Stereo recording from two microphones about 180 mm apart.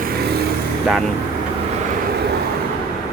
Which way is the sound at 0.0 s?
60° right (ahead or behind).